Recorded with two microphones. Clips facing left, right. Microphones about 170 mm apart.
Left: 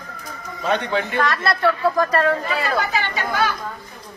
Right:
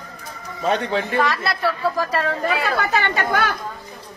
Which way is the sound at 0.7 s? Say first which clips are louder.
Even; 35° right (ahead or behind).